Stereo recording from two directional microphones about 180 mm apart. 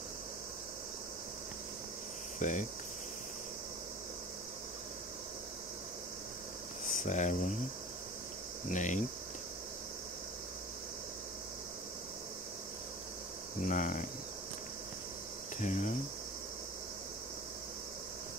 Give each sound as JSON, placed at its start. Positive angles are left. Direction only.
{"t": 2.3, "sound": "speech", "side_deg": 45}
{"t": 7.0, "sound": "speech", "side_deg": 40}
{"t": 8.6, "sound": "speech", "side_deg": 45}
{"t": 13.6, "sound": "speech", "side_deg": 45}
{"t": 15.6, "sound": "speech", "side_deg": 40}